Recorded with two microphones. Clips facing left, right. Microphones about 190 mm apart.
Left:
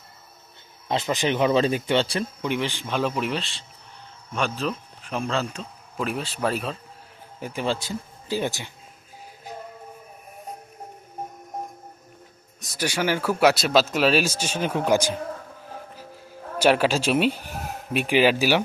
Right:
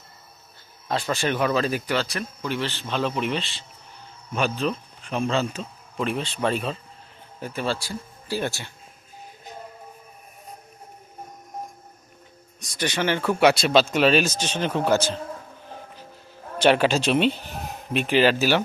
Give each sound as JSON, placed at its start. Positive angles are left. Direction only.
{"t": 0.9, "sound": "speech", "side_deg": 20}
{"t": 2.5, "sound": "speech", "side_deg": 15}
{"t": 7.3, "sound": "speech", "side_deg": 15}
{"t": 12.5, "sound": "speech", "side_deg": 5}
{"t": 16.6, "sound": "speech", "side_deg": 5}